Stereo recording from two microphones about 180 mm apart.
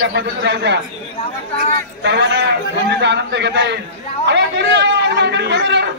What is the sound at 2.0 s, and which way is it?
A man's voice, 75° right (ahead or behind).